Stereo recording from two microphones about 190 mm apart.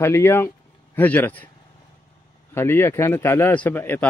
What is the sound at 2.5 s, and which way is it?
Speech, 10° left (ahead or behind).